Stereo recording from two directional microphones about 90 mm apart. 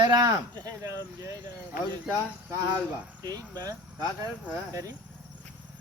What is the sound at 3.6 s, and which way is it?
Speech, 40° right (ahead or behind).